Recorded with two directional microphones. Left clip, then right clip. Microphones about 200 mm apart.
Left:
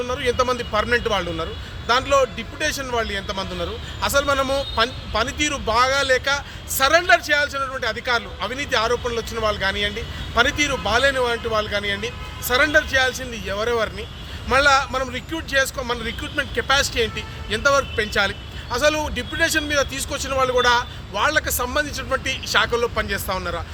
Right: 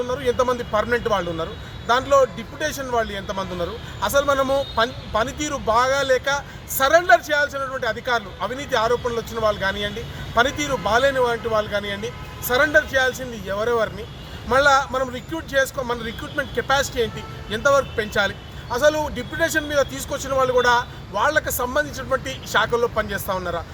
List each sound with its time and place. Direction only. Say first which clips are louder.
0.1 s speech: even; 5° left (ahead or behind)
4.3 s a man's voice: right 1 dB; 20° left (ahead or behind)
4.5 s speech: even; 5° left (ahead or behind)